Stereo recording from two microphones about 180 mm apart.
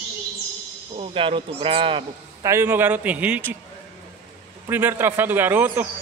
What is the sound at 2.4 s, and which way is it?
Speech, 15° right (ahead or behind).